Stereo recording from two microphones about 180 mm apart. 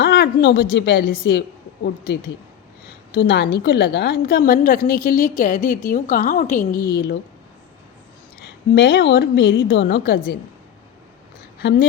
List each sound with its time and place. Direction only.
0.0 s a woman's voice: 60° left (ahead or behind)
8.4 s a woman's voice: 65° left (ahead or behind)